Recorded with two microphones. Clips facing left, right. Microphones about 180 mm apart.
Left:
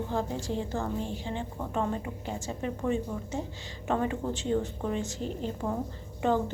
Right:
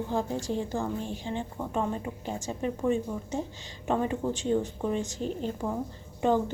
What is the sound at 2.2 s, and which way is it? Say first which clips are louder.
A woman's voice: right 3 dB; 15° right (ahead or behind).